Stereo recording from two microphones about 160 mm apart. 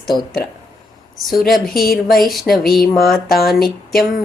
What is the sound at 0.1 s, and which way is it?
Speech, 30° left (ahead or behind).